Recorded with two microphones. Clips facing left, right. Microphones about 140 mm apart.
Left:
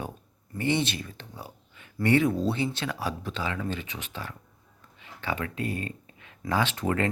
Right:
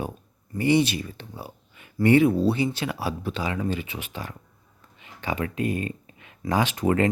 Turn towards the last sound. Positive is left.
turn(degrees=-15)  # may be behind; listen again after turning